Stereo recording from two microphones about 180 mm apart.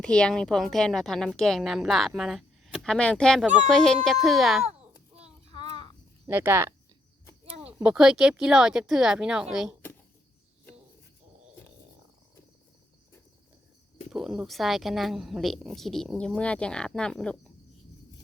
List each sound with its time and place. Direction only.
0.0 s speech: 5° left (ahead or behind)
4.6 s a sound: 35° right (ahead or behind)
6.2 s speech: 15° right (ahead or behind)
7.8 s speech: 5° right (ahead or behind)
14.1 s speech: centre (ahead or behind)